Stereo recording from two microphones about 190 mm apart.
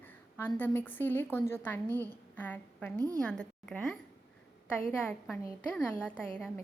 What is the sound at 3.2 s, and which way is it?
A woman's voice, 5° left (ahead or behind).